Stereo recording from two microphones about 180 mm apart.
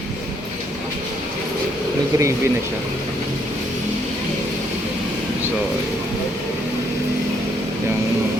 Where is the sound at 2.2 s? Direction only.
15° right (ahead or behind).